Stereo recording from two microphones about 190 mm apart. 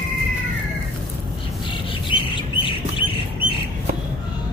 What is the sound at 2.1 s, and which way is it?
Chirp, 25° left (ahead or behind).